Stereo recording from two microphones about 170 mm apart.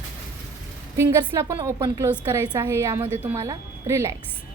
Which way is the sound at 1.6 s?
20° right (ahead or behind).